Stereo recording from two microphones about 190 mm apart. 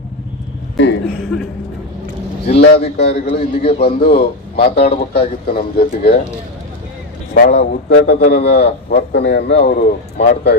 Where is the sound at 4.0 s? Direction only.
55° left (ahead or behind).